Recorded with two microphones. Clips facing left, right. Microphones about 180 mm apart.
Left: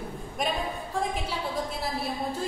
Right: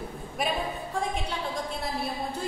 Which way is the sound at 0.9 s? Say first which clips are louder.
Left 1 dB; 5° left (ahead or behind).